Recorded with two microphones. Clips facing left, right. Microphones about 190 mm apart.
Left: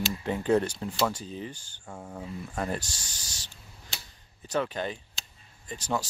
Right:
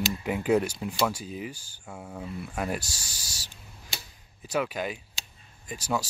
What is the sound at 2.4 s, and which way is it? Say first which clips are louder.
Speech: right 1 dB; 10° right (ahead or behind).